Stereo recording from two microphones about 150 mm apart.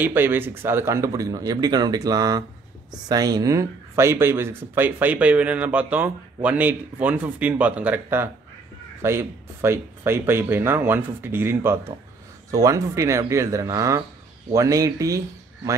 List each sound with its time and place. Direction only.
0.0 s speech: 15° right (ahead or behind)